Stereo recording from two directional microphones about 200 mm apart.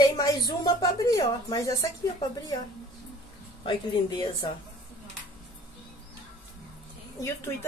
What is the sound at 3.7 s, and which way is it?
Speech, 25° left (ahead or behind).